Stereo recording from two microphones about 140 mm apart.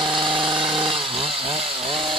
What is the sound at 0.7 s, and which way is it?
Chainsaw, 40° right (ahead or behind).